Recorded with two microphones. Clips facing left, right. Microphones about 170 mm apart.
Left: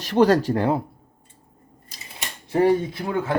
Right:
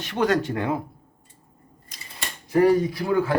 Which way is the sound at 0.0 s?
35° left (ahead or behind).